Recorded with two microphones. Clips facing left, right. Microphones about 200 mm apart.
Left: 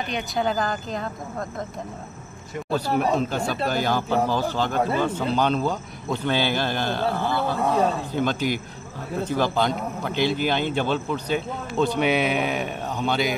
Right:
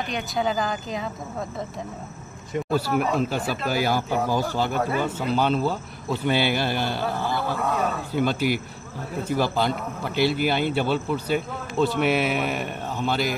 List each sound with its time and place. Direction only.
0.1 s a man's voice: centre (ahead or behind)
3.2 s a man's voice: 5° right (ahead or behind)
7.6 s a man's voice: 25° left (ahead or behind)
8.1 s a man's voice: 10° right (ahead or behind)